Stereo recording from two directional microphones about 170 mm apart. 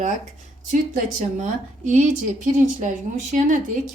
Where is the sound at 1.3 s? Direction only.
45° right (ahead or behind).